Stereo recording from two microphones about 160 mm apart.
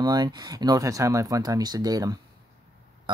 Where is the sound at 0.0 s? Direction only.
25° right (ahead or behind).